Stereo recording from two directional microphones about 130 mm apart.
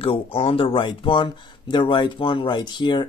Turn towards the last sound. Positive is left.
turn(degrees=35)  # may be behind; listen again after turning